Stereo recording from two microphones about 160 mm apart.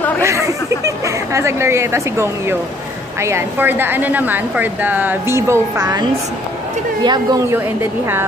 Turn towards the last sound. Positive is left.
turn(degrees=-25)  # may be behind; listen again after turning